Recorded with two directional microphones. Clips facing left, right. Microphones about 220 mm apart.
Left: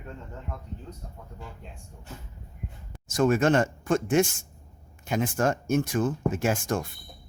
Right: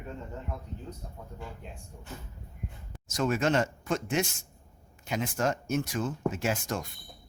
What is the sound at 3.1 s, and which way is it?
Speech, 50° left (ahead or behind).